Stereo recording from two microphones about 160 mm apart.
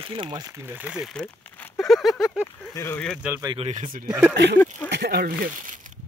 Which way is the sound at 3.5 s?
40° right (ahead or behind).